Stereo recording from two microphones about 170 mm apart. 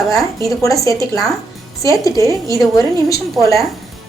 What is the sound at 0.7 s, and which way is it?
A woman's voice, 20° left (ahead or behind).